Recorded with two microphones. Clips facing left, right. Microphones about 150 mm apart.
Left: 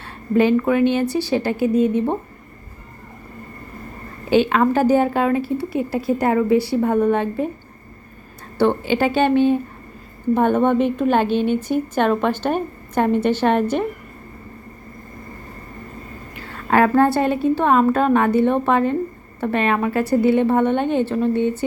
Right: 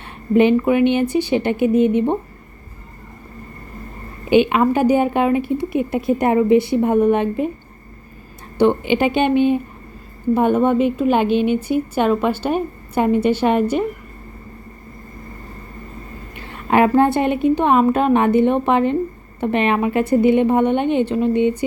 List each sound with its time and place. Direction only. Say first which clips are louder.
0.0 s a woman's voice: right 3 dB; 20° right (ahead or behind)
4.3 s a woman's voice: right 2 dB; 15° right (ahead or behind)
8.5 s a woman's voice: right 2 dB; 15° right (ahead or behind)
16.3 s a woman's voice: right 1 dB; 20° right (ahead or behind)